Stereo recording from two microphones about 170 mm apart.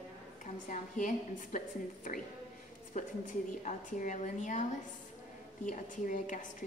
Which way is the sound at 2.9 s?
45° left (ahead or behind).